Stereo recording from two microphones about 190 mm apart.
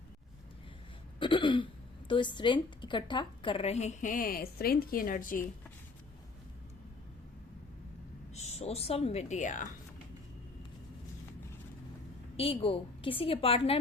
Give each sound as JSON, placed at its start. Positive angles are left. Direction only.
{"t": 1.2, "sound": "a woman's voice", "side_deg": 25}
{"t": 8.3, "sound": "speech", "side_deg": 35}
{"t": 12.4, "sound": "a woman's voice", "side_deg": 30}